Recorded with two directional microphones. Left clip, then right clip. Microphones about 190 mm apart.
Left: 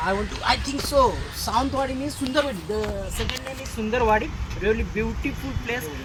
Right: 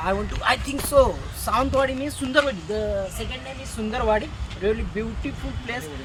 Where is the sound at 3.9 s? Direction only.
20° right (ahead or behind).